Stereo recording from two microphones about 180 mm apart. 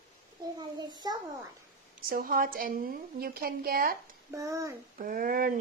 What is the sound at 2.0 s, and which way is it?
Speech, 55° right (ahead or behind).